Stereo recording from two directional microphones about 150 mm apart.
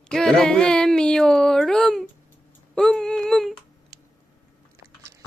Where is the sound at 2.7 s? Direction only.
5° left (ahead or behind).